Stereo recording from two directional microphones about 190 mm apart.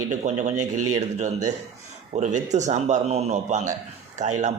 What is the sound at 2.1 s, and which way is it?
Speech, 40° right (ahead or behind).